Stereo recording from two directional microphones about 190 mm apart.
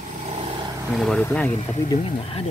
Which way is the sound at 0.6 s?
15° right (ahead or behind).